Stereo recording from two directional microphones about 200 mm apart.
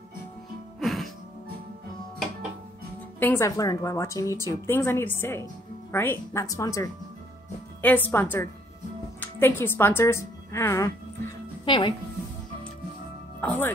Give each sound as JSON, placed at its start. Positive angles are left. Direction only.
{"t": 0.7, "sound": "music", "side_deg": 0}
{"t": 3.2, "sound": "a woman's voice", "side_deg": 10}
{"t": 13.4, "sound": "speech", "side_deg": 10}